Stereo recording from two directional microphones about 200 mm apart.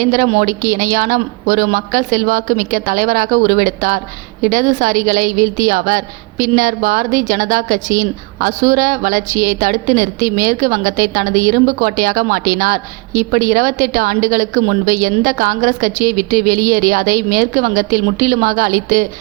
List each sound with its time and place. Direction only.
0.0 s a woman's voice: 40° right (ahead or behind)